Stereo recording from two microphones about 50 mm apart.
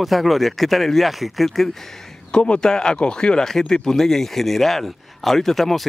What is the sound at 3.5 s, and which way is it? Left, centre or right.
Speech, centre.